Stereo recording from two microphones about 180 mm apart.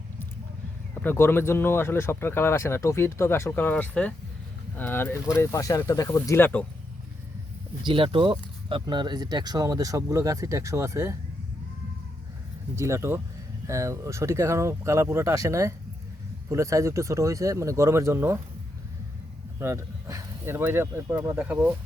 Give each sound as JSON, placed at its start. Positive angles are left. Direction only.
{"t": 1.0, "sound": "speech", "side_deg": 15}
{"t": 7.9, "sound": "speech", "side_deg": -30}
{"t": 12.7, "sound": "speech", "side_deg": -15}
{"t": 19.5, "sound": "speech", "side_deg": -15}